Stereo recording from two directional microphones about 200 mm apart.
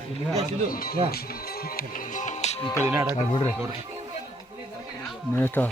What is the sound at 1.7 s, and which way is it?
Music, 40° left (ahead or behind).